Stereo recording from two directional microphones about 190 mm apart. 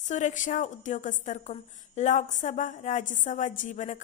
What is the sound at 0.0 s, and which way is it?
A woman's voice, 40° left (ahead or behind).